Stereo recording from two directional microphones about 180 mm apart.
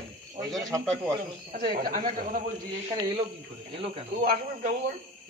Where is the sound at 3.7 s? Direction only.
30° right (ahead or behind).